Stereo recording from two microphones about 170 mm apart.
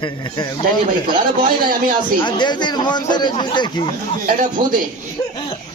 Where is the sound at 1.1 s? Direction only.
55° right (ahead or behind).